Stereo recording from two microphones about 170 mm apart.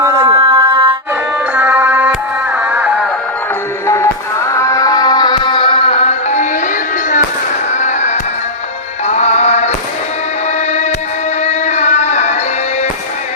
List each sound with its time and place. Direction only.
0.0 s a sound: 20° right (ahead or behind)
0.3 s a sound: 30° right (ahead or behind)
1.5 s music: 10° right (ahead or behind)
3.8 s music: 15° left (ahead or behind); by 6.5 s 40° left (ahead or behind)
7.7 s fireworks: 45° left (ahead or behind)
9.0 s music: 40° left (ahead or behind)
11.4 s music: 40° left (ahead or behind)